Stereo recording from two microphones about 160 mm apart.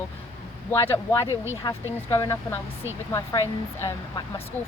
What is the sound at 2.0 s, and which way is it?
Speech, 15° left (ahead or behind).